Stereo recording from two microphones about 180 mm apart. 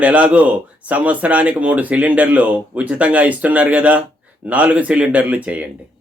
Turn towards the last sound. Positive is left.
turn(degrees=-10)  # may be behind; listen again after turning